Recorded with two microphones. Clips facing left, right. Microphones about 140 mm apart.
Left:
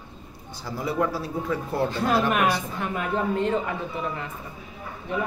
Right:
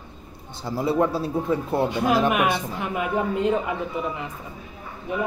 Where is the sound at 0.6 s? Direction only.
25° right (ahead or behind).